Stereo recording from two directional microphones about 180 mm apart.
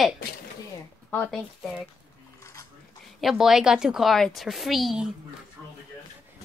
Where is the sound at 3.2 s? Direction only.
Centre (ahead or behind).